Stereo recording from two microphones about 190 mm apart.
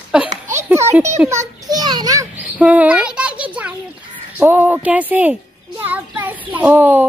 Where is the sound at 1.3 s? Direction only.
20° right (ahead or behind).